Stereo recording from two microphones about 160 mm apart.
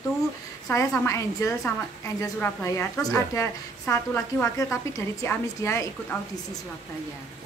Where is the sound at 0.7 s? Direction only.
20° left (ahead or behind).